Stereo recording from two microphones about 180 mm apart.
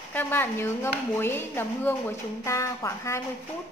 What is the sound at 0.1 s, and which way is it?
A woman's voice, 10° left (ahead or behind).